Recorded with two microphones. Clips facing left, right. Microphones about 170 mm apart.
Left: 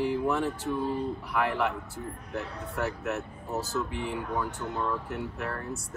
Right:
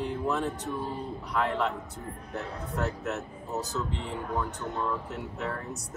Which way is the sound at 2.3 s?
Centre (ahead or behind).